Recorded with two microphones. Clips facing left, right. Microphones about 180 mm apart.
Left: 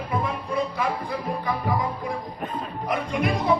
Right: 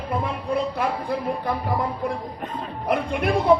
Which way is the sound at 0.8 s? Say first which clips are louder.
Right 2 dB; 60° right (ahead or behind).